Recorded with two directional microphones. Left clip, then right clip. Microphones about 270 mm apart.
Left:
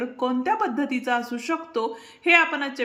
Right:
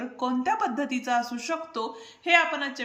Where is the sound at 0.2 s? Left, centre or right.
Centre.